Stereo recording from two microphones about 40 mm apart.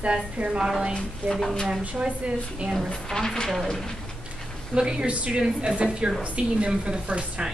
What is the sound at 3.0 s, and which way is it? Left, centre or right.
Speech, centre.